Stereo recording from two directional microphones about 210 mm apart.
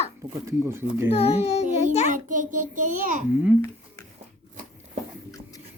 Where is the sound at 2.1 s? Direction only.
40° right (ahead or behind).